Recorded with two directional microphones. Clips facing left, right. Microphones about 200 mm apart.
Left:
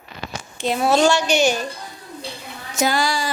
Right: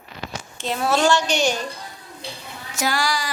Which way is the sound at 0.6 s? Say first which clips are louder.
Left 4 dB; 15° left (ahead or behind).